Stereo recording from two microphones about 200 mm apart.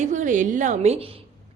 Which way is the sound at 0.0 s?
40° right (ahead or behind).